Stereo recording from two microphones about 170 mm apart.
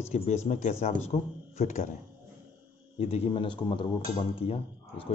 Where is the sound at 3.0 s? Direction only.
35° left (ahead or behind).